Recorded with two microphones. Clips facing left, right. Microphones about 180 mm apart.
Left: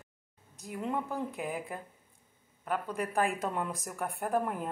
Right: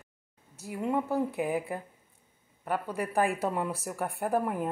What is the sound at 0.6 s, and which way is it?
Speech, 5° right (ahead or behind).